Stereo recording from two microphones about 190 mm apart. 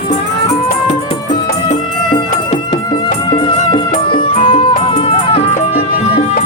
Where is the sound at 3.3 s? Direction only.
25° left (ahead or behind).